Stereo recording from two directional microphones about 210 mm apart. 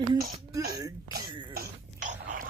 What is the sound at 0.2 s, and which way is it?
Speech, 45° right (ahead or behind).